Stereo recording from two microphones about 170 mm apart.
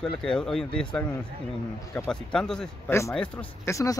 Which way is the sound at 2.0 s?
5° left (ahead or behind).